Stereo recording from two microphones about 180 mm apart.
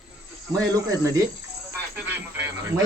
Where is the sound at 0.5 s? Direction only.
20° right (ahead or behind).